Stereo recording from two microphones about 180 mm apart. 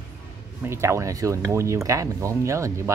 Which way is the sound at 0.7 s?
15° right (ahead or behind).